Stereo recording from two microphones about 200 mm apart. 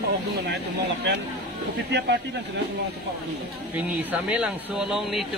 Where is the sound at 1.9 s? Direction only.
55° right (ahead or behind).